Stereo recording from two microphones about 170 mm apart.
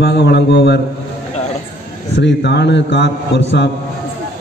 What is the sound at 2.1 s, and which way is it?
A man's voice, 90° left.